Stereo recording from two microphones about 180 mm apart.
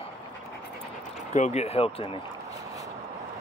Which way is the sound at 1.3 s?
40° left (ahead or behind).